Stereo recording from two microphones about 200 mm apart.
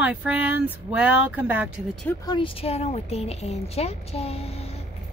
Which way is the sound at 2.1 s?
20° left (ahead or behind).